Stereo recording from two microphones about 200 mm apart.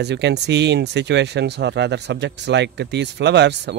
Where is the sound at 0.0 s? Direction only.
60° right (ahead or behind).